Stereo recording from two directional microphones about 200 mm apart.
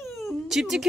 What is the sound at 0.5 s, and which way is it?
Speech, centre (ahead or behind).